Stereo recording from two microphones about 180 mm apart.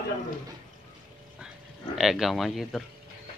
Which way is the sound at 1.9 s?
Centre (ahead or behind).